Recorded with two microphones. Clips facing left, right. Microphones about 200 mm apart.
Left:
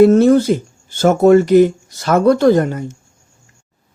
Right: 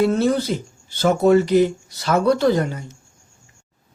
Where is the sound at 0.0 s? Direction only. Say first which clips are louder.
Left 9 dB; 50° left (ahead or behind).